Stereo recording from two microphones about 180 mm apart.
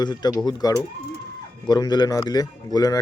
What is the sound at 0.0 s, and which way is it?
Speech, 25° left (ahead or behind).